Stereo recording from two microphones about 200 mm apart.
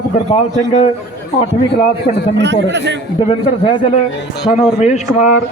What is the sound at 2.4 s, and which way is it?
Speech, 60° right (ahead or behind).